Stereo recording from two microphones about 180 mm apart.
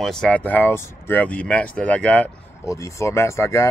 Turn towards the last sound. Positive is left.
turn(degrees=15)  # may be behind; listen again after turning